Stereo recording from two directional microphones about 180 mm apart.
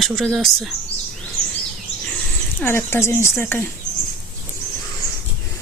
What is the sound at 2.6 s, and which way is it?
Speech, 15° left (ahead or behind).